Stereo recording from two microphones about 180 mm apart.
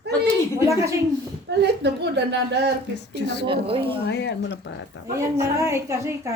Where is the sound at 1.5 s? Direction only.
70° right (ahead or behind).